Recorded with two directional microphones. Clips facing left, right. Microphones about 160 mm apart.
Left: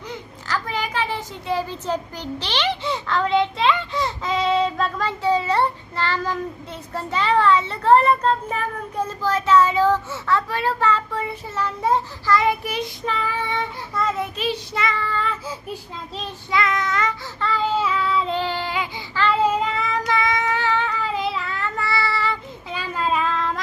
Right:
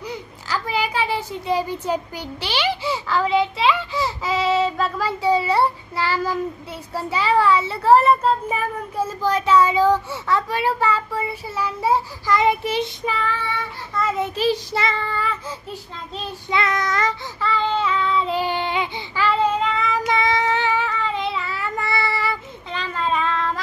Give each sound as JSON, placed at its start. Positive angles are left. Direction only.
{"t": 0.1, "sound": "a child's voice", "side_deg": -10}
{"t": 12.4, "sound": "child singing", "side_deg": -25}
{"t": 13.2, "sound": "child singing", "side_deg": 15}
{"t": 14.3, "sound": "child singing", "side_deg": -35}
{"t": 16.4, "sound": "child singing", "side_deg": -25}
{"t": 16.7, "sound": "child singing", "side_deg": -40}
{"t": 17.4, "sound": "child singing", "side_deg": 0}
{"t": 18.4, "sound": "child singing", "side_deg": -20}
{"t": 19.4, "sound": "child singing", "side_deg": 10}
{"t": 20.1, "sound": "child singing", "side_deg": -25}
{"t": 20.6, "sound": "child singing", "side_deg": -5}
{"t": 22.7, "sound": "child singing", "side_deg": 5}